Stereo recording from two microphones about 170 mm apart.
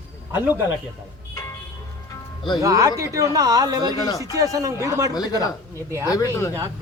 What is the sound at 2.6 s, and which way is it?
Speech, 20° right (ahead or behind).